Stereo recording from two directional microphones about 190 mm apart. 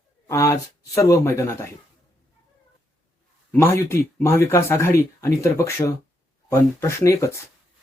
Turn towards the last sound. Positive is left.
turn(degrees=15)  # may be behind; listen again after turning